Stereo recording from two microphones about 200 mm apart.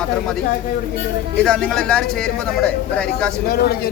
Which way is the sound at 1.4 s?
5° left (ahead or behind).